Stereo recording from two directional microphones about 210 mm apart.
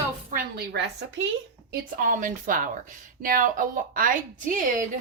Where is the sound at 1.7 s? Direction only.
40° right (ahead or behind).